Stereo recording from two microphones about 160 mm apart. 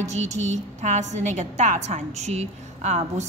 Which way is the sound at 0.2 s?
45° right (ahead or behind).